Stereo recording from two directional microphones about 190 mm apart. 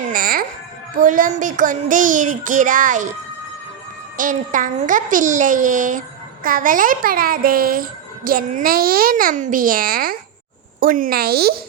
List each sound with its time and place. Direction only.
0.1 s a sound: 50° right (ahead or behind)
0.9 s a child's voice: 45° right (ahead or behind)
4.2 s a child's voice: 45° right (ahead or behind)